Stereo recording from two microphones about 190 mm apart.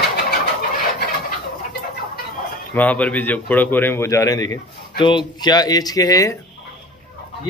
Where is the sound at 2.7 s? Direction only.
10° left (ahead or behind).